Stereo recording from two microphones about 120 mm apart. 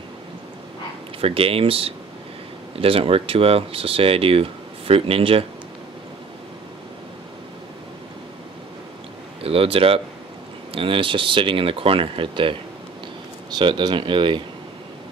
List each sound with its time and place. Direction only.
1.2 s speech: 50° right (ahead or behind)
9.4 s speech: 50° right (ahead or behind)